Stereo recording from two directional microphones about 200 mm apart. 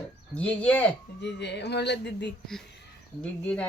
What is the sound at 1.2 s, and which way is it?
Speech, 60° left (ahead or behind).